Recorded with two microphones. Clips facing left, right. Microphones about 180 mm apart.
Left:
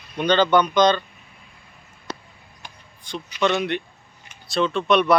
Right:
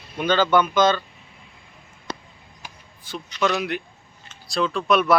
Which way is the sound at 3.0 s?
5° right (ahead or behind).